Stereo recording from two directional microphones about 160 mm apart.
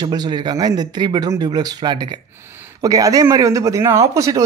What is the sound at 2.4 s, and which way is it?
A man's voice, 15° right (ahead or behind).